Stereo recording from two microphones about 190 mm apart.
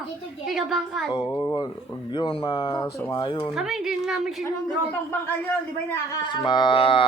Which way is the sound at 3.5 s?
Centre (ahead or behind).